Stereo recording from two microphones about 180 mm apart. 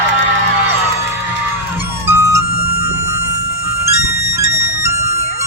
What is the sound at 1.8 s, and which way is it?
Music, 15° right (ahead or behind).